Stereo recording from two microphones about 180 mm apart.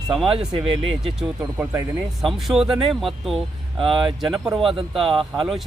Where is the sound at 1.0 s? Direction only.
5° right (ahead or behind).